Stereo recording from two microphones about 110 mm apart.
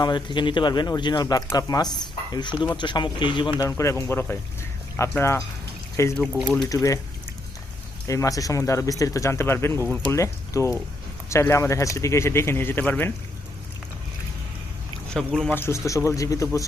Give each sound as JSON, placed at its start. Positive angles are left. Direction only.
{"t": 0.0, "sound": "speech", "side_deg": 45}
{"t": 3.7, "sound": "speech", "side_deg": 25}
{"t": 6.1, "sound": "speech", "side_deg": 5}
{"t": 6.7, "sound": "speech", "side_deg": 30}
{"t": 8.0, "sound": "speech", "side_deg": 30}
{"t": 15.1, "sound": "speech", "side_deg": 10}